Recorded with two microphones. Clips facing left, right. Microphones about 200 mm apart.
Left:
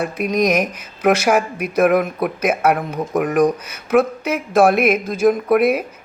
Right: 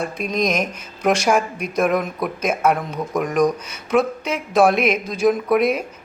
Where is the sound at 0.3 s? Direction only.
10° left (ahead or behind).